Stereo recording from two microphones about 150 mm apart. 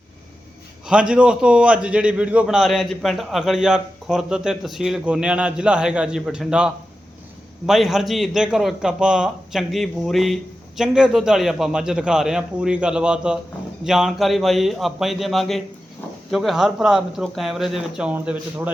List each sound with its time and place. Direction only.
0.9 s a man's voice: 5° right (ahead or behind)